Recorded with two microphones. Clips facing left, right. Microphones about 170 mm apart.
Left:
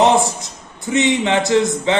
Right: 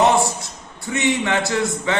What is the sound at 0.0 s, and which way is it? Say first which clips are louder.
A man's voice: left 2 dB; 20° left (ahead or behind).